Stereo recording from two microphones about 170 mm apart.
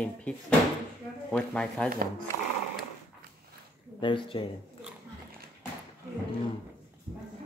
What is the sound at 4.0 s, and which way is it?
Speech, 30° left (ahead or behind).